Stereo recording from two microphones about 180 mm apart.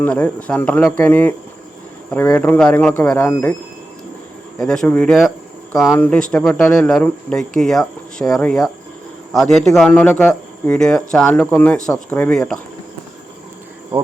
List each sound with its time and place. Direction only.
0.0 s speech: 10° left (ahead or behind)
4.5 s speech: 5° left (ahead or behind)